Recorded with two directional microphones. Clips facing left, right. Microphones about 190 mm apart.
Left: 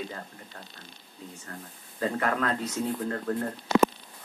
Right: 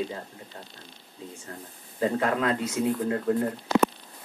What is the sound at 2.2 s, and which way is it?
Speech, 10° right (ahead or behind).